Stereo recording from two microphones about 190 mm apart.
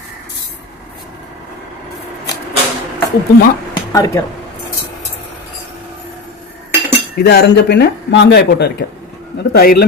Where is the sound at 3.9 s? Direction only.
15° left (ahead or behind).